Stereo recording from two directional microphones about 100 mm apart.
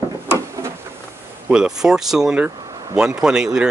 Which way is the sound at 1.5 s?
10° right (ahead or behind).